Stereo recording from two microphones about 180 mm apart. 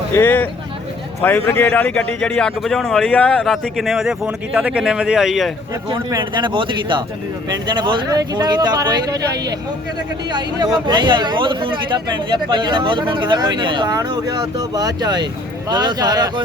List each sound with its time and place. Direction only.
0.1 s a man's voice: 10° left (ahead or behind)
6.1 s speech: 25° right (ahead or behind)
10.3 s speech: 25° right (ahead or behind)